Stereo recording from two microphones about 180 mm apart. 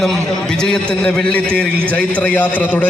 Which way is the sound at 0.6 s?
5° left (ahead or behind).